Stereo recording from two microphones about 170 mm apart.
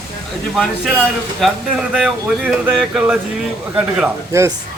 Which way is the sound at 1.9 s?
5° right (ahead or behind).